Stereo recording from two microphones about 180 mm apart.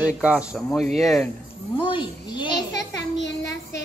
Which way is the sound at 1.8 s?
25° left (ahead or behind).